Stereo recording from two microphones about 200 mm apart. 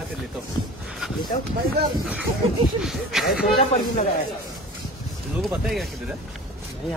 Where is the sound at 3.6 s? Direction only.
30° left (ahead or behind).